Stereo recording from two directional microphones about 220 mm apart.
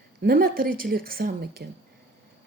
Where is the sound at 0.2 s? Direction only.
45° right (ahead or behind).